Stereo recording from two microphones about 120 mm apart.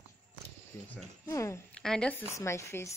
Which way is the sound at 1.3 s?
25° left (ahead or behind).